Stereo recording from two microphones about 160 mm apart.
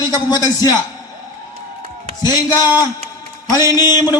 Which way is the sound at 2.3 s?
25° left (ahead or behind).